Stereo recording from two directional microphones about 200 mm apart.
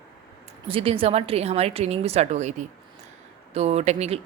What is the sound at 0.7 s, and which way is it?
Speech, 30° right (ahead or behind).